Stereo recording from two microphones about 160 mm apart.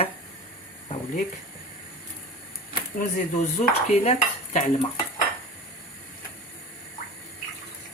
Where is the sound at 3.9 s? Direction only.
45° left (ahead or behind).